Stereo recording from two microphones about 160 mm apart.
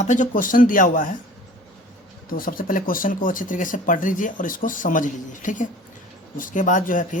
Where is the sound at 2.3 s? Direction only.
60° left (ahead or behind).